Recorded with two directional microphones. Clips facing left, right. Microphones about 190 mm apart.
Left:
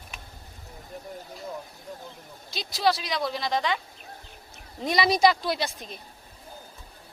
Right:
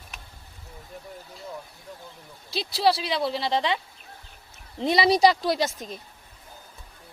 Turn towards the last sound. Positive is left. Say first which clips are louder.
# right 4 dB
turn(degrees=-40)  # may be behind; listen again after turning